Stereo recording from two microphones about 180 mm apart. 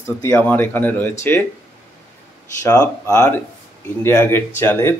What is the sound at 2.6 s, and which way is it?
Speech, 15° left (ahead or behind).